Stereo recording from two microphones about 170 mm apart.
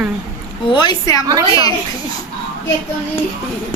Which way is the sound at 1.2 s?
20° right (ahead or behind).